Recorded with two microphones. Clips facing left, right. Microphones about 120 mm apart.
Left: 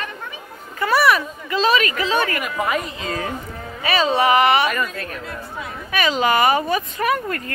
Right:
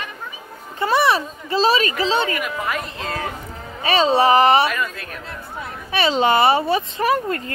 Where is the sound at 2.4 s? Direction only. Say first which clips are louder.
Left 2 dB; centre (ahead or behind).